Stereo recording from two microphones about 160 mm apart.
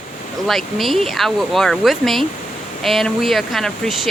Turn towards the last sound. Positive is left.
turn(degrees=0)  # may be behind; listen again after turning